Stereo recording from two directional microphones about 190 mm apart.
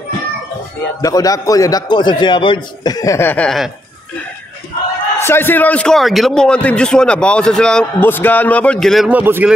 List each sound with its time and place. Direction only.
1.0 s a man's voice: 20° left (ahead or behind); by 3.7 s centre (ahead or behind)
5.2 s a man's voice: 10° left (ahead or behind); by 9.5 s 10° right (ahead or behind)